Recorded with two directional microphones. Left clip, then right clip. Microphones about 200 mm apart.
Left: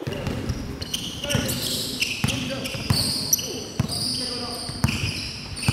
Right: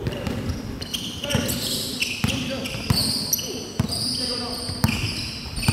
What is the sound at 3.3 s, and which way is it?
Basketball bounce, 15° left (ahead or behind).